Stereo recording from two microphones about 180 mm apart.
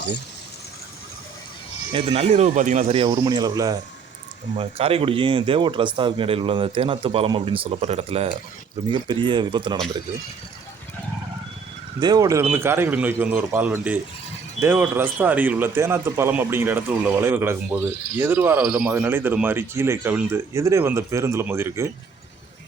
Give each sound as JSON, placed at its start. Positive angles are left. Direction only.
{"t": 1.9, "sound": "speech", "side_deg": -30}
{"t": 4.5, "sound": "speech", "side_deg": -30}
{"t": 11.9, "sound": "speech", "side_deg": -20}